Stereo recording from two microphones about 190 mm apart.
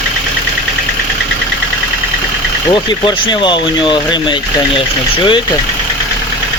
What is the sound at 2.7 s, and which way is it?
Speech, 25° left (ahead or behind).